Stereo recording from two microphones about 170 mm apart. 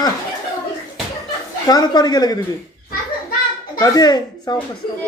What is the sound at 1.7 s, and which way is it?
Speech, 25° left (ahead or behind).